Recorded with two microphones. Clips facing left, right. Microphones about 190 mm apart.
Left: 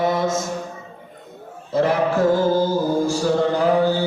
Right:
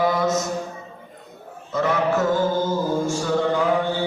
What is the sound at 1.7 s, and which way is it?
Music, 30° left (ahead or behind).